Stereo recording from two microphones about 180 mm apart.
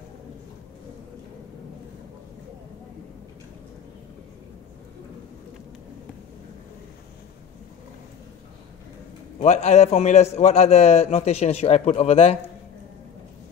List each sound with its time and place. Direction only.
9.4 s a man's voice: 40° left (ahead or behind)